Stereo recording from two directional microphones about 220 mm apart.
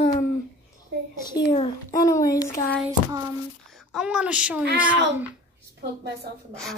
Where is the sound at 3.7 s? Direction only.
5° right (ahead or behind).